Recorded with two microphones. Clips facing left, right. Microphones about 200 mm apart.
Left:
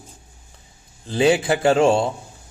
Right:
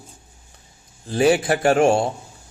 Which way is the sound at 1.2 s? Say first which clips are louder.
Even; 25° left (ahead or behind).